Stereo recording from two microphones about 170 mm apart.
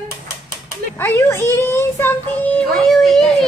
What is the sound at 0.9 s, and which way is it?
A woman's voice, 15° left (ahead or behind).